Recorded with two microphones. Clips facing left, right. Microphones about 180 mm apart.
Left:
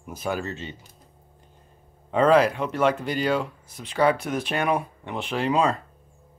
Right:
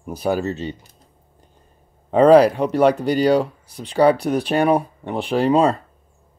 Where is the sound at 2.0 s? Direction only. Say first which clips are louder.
Right 7 dB; 35° right (ahead or behind).